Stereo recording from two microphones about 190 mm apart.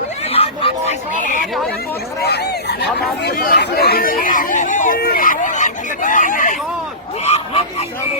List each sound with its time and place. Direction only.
0.3 s hubbub: 30° left (ahead or behind)
2.2 s speech: 55° left (ahead or behind)
7.3 s a sound: 35° left (ahead or behind)